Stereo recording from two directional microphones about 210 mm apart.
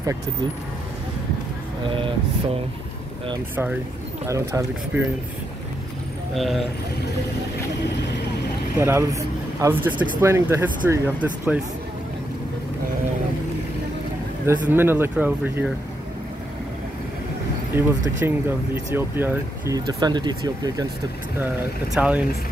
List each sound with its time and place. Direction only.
4.3 s speech: 15° right (ahead or behind)
6.3 s speech: centre (ahead or behind)
8.7 s speech: 15° right (ahead or behind)
14.4 s speech: 10° right (ahead or behind)
17.7 s speech: 10° right (ahead or behind)
21.9 s speech: 5° right (ahead or behind)